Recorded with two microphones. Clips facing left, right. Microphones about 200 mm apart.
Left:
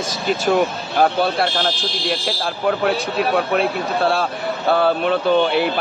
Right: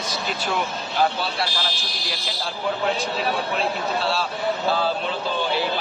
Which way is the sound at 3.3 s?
60° left (ahead or behind).